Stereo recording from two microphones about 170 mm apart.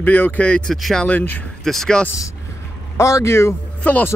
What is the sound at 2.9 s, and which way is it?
Speech, 15° left (ahead or behind).